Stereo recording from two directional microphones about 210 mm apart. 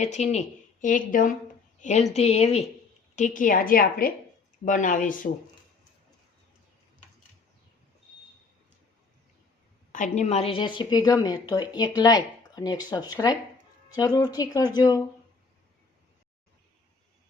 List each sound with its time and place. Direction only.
0.0 s speech: 35° left (ahead or behind)
9.9 s speech: 35° left (ahead or behind); by 15.0 s 15° left (ahead or behind)